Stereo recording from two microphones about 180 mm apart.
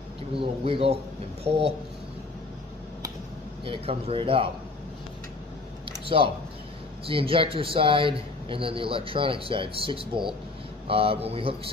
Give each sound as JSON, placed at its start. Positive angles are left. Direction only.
{"t": 0.4, "sound": "speech", "side_deg": -30}
{"t": 3.6, "sound": "speech", "side_deg": -30}
{"t": 6.0, "sound": "speech", "side_deg": -30}